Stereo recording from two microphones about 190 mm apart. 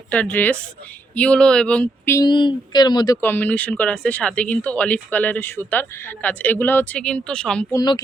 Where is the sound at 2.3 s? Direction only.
25° left (ahead or behind).